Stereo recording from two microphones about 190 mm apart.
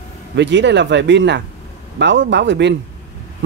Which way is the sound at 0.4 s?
70° right (ahead or behind).